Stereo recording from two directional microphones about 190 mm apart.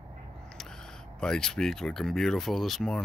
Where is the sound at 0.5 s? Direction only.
5° left (ahead or behind).